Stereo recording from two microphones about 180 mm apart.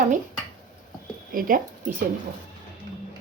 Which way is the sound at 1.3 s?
50° right (ahead or behind).